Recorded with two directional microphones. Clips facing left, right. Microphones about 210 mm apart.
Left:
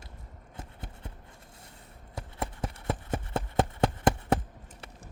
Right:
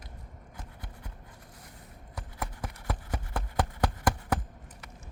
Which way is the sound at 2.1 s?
25° left (ahead or behind).